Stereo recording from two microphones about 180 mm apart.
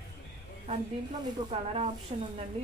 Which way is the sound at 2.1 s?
40° right (ahead or behind).